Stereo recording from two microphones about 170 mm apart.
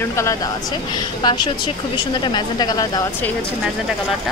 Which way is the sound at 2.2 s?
25° left (ahead or behind).